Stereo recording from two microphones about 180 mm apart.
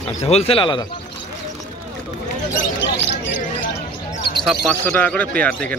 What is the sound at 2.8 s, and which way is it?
Speech, 85° left.